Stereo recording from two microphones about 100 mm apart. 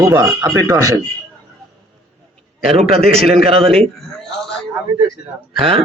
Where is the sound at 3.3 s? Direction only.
75° right (ahead or behind).